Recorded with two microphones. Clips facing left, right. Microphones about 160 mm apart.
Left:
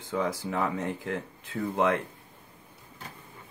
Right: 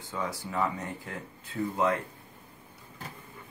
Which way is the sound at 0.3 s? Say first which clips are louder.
Left 2 dB; 80° left.